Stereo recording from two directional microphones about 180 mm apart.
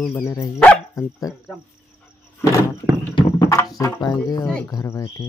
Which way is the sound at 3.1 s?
20° left (ahead or behind).